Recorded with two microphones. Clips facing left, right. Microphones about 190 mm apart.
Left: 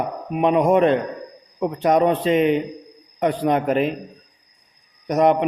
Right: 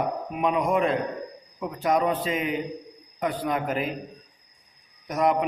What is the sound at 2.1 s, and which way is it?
A man's voice, 75° left (ahead or behind).